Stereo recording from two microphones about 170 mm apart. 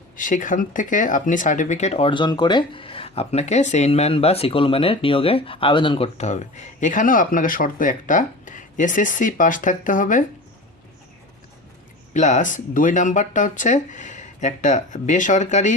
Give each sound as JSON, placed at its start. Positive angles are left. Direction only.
{"t": 0.2, "sound": "speech", "side_deg": 50}
{"t": 6.1, "sound": "speech", "side_deg": 45}
{"t": 12.1, "sound": "speech", "side_deg": 45}